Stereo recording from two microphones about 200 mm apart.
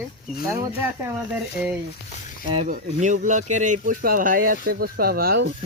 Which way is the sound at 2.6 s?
40° right (ahead or behind).